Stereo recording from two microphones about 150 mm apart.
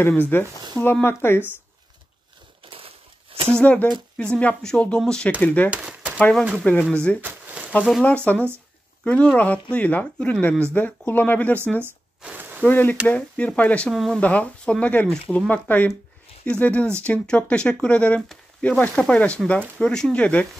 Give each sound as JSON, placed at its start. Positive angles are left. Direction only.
{"t": 0.1, "sound": "speech", "side_deg": 10}
{"t": 2.6, "sound": "crumpling", "side_deg": -40}
{"t": 3.5, "sound": "speech", "side_deg": 10}
{"t": 5.7, "sound": "a sound", "side_deg": -10}
{"t": 6.1, "sound": "speech", "side_deg": 5}
{"t": 7.2, "sound": "a sound", "side_deg": -10}
{"t": 8.3, "sound": "speech", "side_deg": 10}
{"t": 11.8, "sound": "a sound", "side_deg": -10}
{"t": 12.6, "sound": "speech", "side_deg": 15}